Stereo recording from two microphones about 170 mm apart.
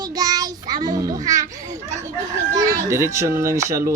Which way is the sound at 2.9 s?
15° right (ahead or behind).